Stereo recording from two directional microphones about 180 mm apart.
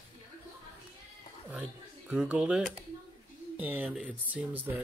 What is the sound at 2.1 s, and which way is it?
Speech, 5° right (ahead or behind).